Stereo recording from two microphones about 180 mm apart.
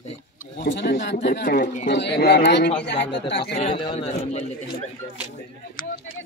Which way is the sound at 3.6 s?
30° left (ahead or behind).